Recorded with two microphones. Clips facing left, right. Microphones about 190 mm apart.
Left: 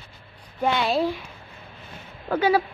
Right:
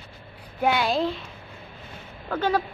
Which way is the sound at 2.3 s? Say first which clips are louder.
Left 4 dB; 10° left (ahead or behind).